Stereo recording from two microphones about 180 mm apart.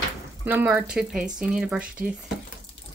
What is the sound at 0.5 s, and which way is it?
Speech, 10° right (ahead or behind).